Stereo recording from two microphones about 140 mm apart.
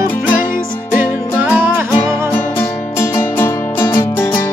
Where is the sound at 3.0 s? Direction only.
15° left (ahead or behind).